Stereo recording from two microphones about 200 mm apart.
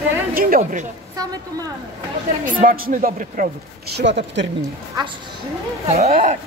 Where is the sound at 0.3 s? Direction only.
45° right (ahead or behind).